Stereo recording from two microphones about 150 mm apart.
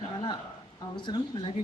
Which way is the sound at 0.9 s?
30° left (ahead or behind).